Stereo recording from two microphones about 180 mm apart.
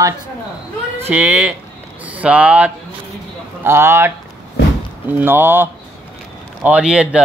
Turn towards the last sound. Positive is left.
turn(degrees=-5)  # may be behind; listen again after turning